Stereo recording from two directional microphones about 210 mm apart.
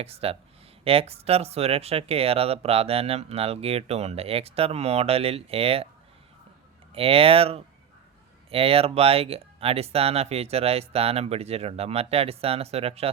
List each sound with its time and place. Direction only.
0.0 s speech: 30° right (ahead or behind)
6.9 s speech: 25° right (ahead or behind)